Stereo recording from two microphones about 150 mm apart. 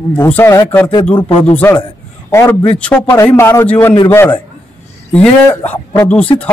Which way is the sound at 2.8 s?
10° left (ahead or behind).